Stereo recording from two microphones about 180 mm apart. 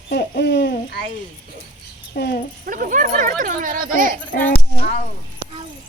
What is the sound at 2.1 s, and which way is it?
Speech, 60° left (ahead or behind).